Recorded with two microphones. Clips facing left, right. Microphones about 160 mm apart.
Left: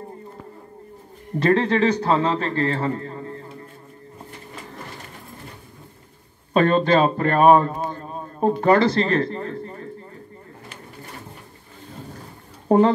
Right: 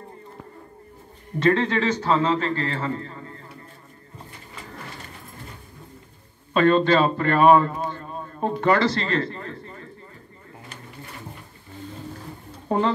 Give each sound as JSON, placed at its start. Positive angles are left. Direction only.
{"t": 1.4, "sound": "a man's voice", "side_deg": 35}
{"t": 6.5, "sound": "a man's voice", "side_deg": 40}
{"t": 12.6, "sound": "speech", "side_deg": 35}